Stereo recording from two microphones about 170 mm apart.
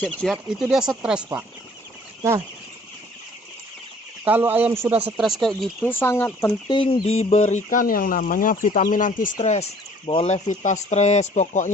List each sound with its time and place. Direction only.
0.0 s speech: 5° left (ahead or behind)
4.2 s speech: 10° right (ahead or behind)
5.8 s speech: 10° left (ahead or behind)
6.7 s speech: 30° left (ahead or behind); by 11.7 s 45° left (ahead or behind)